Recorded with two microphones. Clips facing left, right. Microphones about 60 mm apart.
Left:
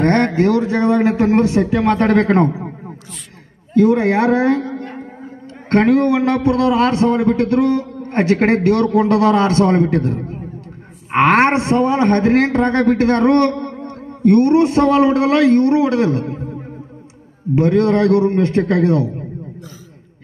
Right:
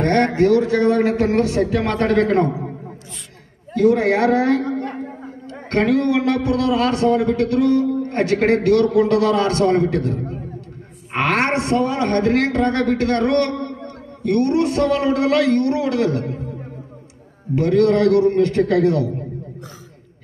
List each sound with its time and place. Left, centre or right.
0.0 s a sound: left
0.6 s a man's voice: centre
2.0 s a man's voice: left
3.7 s a man's voice: left
5.7 s a man's voice: left
17.6 s a man's voice: left